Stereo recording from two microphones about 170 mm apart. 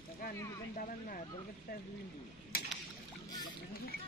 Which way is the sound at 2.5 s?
60° left (ahead or behind).